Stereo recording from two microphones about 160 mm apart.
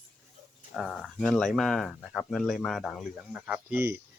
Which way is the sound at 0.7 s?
Centre (ahead or behind).